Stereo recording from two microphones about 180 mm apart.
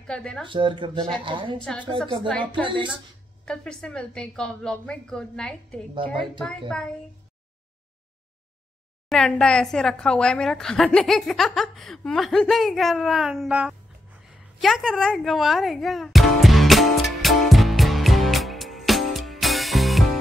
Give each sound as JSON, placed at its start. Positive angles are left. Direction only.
{"t": 0.0, "sound": "speech", "side_deg": 5}
{"t": 0.5, "sound": "speech", "side_deg": -25}
{"t": 1.6, "sound": "a woman's voice", "side_deg": 5}
{"t": 2.6, "sound": "speech", "side_deg": -25}
{"t": 3.4, "sound": "a woman's voice", "side_deg": 5}
{"t": 9.1, "sound": "a woman's voice", "side_deg": 5}
{"t": 14.6, "sound": "music", "side_deg": 0}